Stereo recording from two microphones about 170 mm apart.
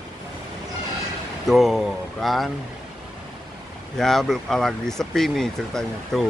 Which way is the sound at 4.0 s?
Centre (ahead or behind).